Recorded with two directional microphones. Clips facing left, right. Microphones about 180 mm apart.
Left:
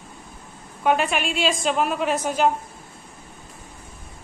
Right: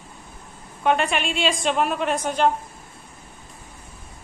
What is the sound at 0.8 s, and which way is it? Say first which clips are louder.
A woman's voice: even; centre (ahead or behind).